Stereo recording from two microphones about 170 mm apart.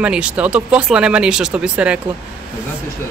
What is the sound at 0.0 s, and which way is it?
Speech, 5° right (ahead or behind).